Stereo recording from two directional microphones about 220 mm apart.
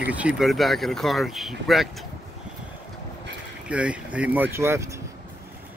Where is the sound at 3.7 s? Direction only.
5° right (ahead or behind).